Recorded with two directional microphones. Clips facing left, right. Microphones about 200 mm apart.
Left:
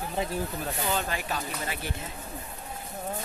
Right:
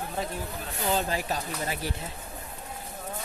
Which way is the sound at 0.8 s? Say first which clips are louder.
Right 5 dB; 35° right (ahead or behind).